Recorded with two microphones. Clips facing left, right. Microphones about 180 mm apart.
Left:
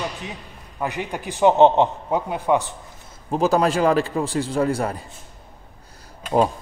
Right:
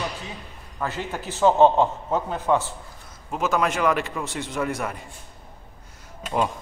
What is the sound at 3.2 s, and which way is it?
A man's voice, 35° left (ahead or behind).